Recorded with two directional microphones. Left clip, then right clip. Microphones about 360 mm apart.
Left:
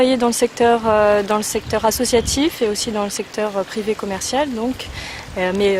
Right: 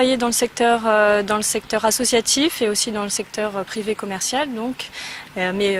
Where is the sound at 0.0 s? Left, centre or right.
Right.